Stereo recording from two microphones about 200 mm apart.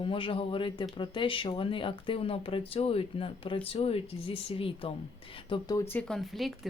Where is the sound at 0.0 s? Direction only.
25° left (ahead or behind).